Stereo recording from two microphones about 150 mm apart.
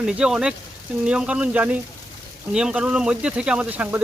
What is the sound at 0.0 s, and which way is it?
Speech, 5° right (ahead or behind).